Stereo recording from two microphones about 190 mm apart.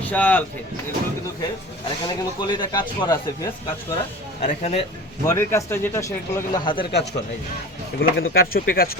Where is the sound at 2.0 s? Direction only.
20° left (ahead or behind).